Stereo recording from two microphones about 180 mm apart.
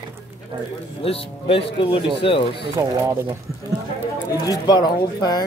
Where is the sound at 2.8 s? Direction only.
15° right (ahead or behind).